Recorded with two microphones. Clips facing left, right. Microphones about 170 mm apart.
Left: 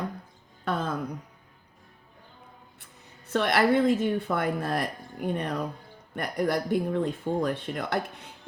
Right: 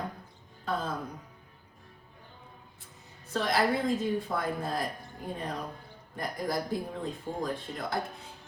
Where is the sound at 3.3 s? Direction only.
75° left (ahead or behind).